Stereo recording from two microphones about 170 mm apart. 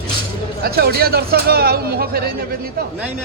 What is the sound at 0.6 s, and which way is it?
Speech, 65° right (ahead or behind).